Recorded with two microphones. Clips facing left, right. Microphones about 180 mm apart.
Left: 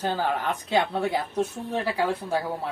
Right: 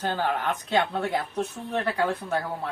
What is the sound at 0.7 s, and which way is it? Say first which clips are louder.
Speech: left 1 dB; 10° left (ahead or behind).